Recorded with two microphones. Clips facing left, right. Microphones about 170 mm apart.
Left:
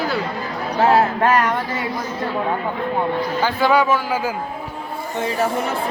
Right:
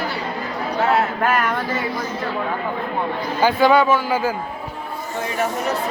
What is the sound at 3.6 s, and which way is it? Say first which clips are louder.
Speech: right 1 dB; 5° left (ahead or behind).